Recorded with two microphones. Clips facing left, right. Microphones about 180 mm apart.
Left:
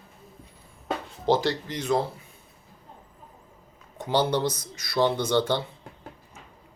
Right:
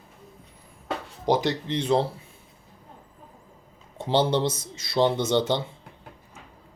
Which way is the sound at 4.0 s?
25° right (ahead or behind).